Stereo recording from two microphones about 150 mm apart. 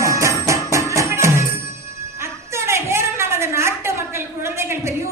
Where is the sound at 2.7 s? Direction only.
15° right (ahead or behind).